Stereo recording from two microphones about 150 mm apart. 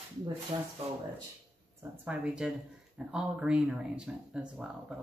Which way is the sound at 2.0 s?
5° right (ahead or behind).